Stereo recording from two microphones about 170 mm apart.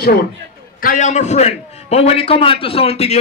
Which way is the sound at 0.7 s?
50° left (ahead or behind).